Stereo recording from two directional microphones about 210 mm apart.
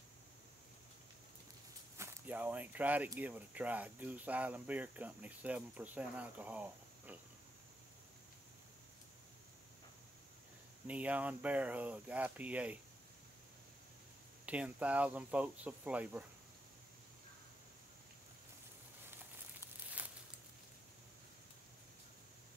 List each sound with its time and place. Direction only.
2.0 s speech: 10° right (ahead or behind)
10.9 s speech: 5° right (ahead or behind)
14.4 s speech: 5° right (ahead or behind)
19.6 s a sound: 5° right (ahead or behind)